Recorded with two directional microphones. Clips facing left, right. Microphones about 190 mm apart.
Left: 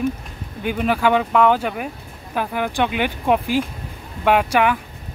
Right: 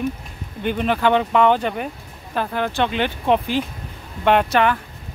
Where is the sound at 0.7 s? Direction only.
5° left (ahead or behind).